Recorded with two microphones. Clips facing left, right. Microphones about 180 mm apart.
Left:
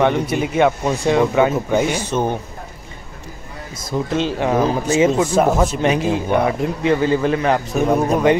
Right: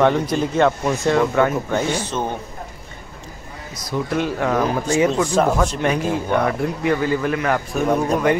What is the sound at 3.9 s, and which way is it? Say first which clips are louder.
Speech: left 2 dB; 35° left (ahead or behind).